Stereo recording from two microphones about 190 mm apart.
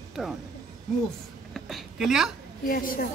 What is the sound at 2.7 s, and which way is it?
Speech, 45° left (ahead or behind).